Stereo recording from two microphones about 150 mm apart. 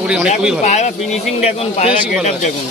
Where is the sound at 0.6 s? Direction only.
50° left (ahead or behind).